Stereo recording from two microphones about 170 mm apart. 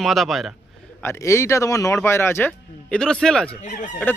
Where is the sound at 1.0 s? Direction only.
15° left (ahead or behind).